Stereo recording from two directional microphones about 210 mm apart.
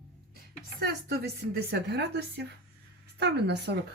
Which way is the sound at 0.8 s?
50° right (ahead or behind).